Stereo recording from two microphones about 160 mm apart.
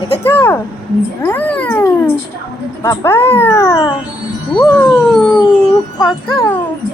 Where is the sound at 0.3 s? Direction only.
10° left (ahead or behind).